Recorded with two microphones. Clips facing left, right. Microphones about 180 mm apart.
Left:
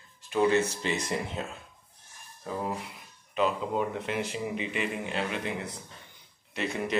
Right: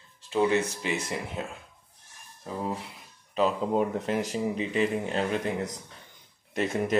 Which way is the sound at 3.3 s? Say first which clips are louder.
Right 3 dB; 35° right (ahead or behind).